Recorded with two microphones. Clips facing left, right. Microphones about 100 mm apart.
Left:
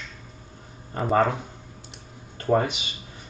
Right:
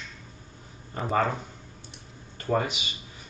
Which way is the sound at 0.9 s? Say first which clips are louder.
Left 4 dB; 40° left (ahead or behind).